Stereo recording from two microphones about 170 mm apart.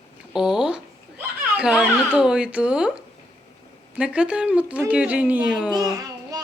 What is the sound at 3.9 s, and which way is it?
Speech, 5° right (ahead or behind).